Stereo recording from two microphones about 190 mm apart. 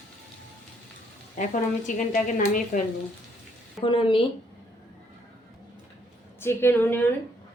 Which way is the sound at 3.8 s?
25° left (ahead or behind).